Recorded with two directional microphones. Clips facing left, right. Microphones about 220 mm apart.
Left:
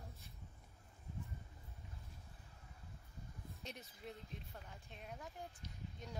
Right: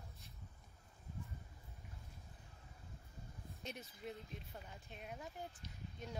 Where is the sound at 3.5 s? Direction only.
Centre (ahead or behind).